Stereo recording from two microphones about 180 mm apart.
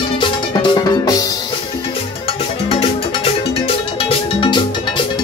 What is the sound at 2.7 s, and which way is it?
Music, 30° left (ahead or behind).